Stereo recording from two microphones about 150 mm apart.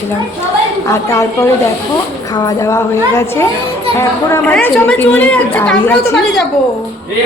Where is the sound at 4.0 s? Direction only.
15° left (ahead or behind).